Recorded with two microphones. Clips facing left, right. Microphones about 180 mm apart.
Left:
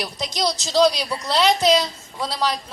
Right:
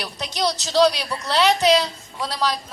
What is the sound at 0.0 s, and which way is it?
Speech, 10° left (ahead or behind).